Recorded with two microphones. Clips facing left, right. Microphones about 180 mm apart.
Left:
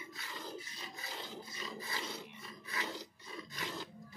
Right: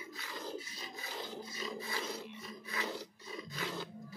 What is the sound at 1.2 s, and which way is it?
Roar, 10° right (ahead or behind).